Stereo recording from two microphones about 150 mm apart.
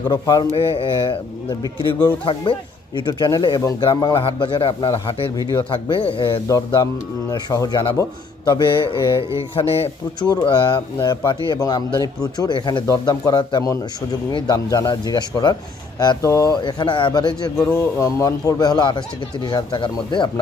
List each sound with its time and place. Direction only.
0.1 s speech: 25° left (ahead or behind)
0.5 s a man's voice: 40° left (ahead or behind)
6.8 s a man's voice: 25° left (ahead or behind); by 10.2 s 40° left (ahead or behind)
10.2 s speech: 25° left (ahead or behind)
17.6 s speech: 15° left (ahead or behind); by 20.4 s 30° left (ahead or behind)